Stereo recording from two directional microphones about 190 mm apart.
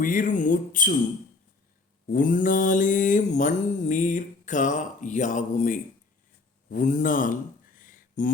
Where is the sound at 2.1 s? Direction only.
45° left (ahead or behind).